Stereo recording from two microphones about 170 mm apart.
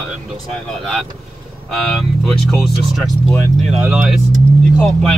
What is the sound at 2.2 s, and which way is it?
Speech, centre (ahead or behind).